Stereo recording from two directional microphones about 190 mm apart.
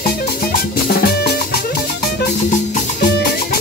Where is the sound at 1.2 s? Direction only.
55° left (ahead or behind).